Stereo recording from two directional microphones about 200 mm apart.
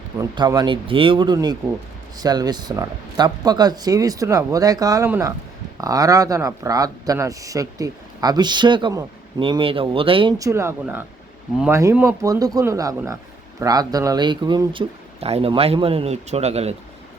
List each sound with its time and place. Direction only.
0.2 s speech: 20° right (ahead or behind)